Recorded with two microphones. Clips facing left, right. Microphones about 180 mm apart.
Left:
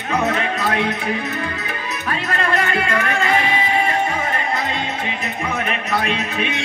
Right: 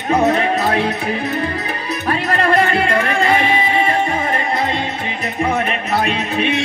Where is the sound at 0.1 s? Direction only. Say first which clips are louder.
Right 6 dB; 30° right (ahead or behind).